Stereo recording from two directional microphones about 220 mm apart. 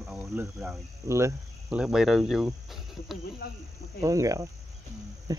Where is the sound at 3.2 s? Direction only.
45° left (ahead or behind).